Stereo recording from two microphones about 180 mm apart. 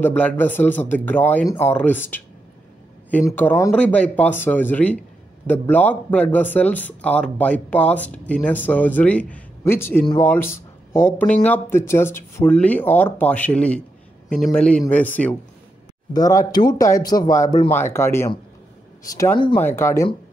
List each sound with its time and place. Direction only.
0.0 s speech: 10° left (ahead or behind)
16.1 s speech: 20° left (ahead or behind)
19.6 s speech: 15° left (ahead or behind)